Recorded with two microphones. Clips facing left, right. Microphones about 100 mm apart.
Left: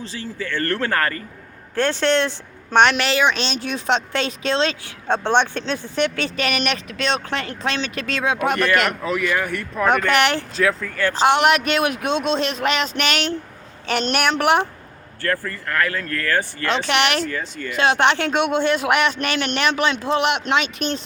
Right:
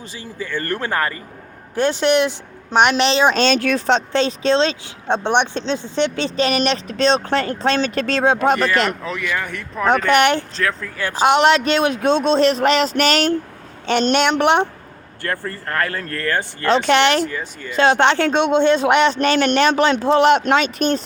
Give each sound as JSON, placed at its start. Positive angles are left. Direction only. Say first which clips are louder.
{"t": 0.0, "sound": "a woman's voice", "louder": "left 1 dB", "side_deg": -15}
{"t": 3.4, "sound": "speech", "louder": "right 9 dB", "side_deg": -55}
{"t": 3.8, "sound": "speech", "louder": "right 4 dB", "side_deg": -35}
{"t": 8.9, "sound": "speech", "louder": "left 2 dB", "side_deg": 0}
{"t": 10.0, "sound": "a man's voice", "louder": "right 3 dB", "side_deg": -20}
{"t": 10.6, "sound": "speech", "louder": "left 2 dB", "side_deg": 5}
{"t": 10.9, "sound": "a man's voice", "louder": "right 3 dB", "side_deg": -15}
{"t": 14.1, "sound": "a man's voice", "louder": "right 2 dB", "side_deg": -25}
{"t": 15.6, "sound": "speech", "louder": "even", "side_deg": -35}
{"t": 16.6, "sound": "speech", "louder": "right 7 dB", "side_deg": -35}
{"t": 17.2, "sound": "speech", "louder": "even", "side_deg": -15}
{"t": 17.7, "sound": "speech", "louder": "right 3 dB", "side_deg": -30}